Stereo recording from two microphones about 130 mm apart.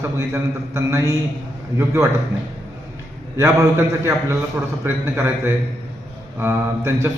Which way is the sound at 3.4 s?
20° right (ahead or behind).